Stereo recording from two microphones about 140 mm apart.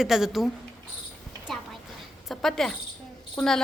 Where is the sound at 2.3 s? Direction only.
5° left (ahead or behind).